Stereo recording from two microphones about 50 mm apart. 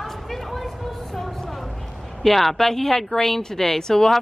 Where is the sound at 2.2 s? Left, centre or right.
Centre.